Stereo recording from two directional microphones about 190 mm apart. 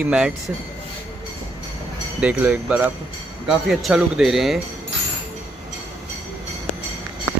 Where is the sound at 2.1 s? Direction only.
10° right (ahead or behind).